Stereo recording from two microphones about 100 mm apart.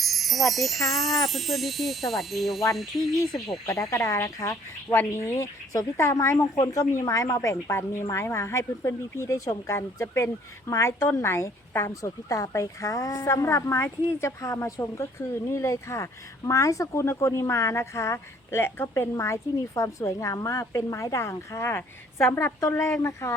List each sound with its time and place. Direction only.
0.0 s wind chime: centre (ahead or behind)
0.9 s speech: centre (ahead or behind)
3.7 s a woman's voice: 35° left (ahead or behind)